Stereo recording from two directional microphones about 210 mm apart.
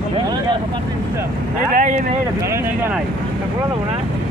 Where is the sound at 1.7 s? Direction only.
40° right (ahead or behind).